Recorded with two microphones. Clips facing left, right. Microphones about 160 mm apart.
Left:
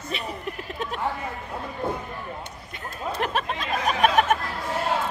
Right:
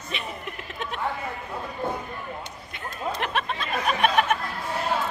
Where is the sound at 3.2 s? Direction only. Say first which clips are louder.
Left 4 dB; 40° left (ahead or behind).